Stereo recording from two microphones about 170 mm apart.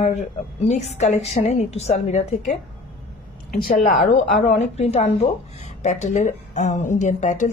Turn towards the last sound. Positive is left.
turn(degrees=45)  # may be behind; listen again after turning